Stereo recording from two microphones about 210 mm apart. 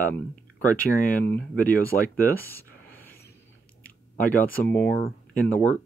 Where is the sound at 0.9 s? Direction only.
45° left (ahead or behind).